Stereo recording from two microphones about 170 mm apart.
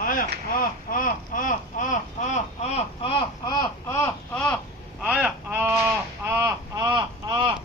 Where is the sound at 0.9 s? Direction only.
55° left (ahead or behind); by 4.5 s 10° left (ahead or behind).